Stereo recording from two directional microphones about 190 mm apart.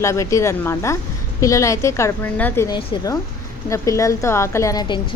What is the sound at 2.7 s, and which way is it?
Speech, 25° left (ahead or behind).